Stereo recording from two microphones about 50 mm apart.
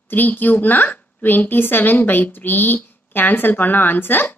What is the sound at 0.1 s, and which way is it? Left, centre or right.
A woman's voice, left.